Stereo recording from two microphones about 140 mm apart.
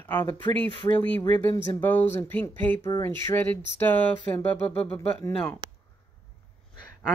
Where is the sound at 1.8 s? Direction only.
15° left (ahead or behind).